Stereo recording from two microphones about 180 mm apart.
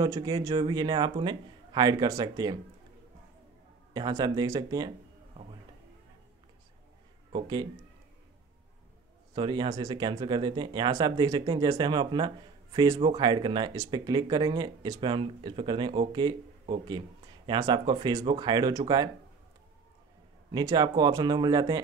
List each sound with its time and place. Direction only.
0.0 s speech: 25° right (ahead or behind)
3.9 s speech: 20° right (ahead or behind)
7.3 s speech: 25° right (ahead or behind)
9.3 s speech: 25° right (ahead or behind)
20.5 s speech: 20° right (ahead or behind)